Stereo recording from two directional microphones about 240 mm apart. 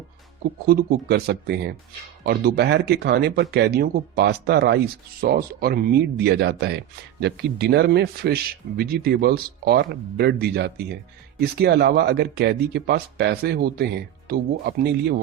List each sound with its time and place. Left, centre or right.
0.7 s speech: right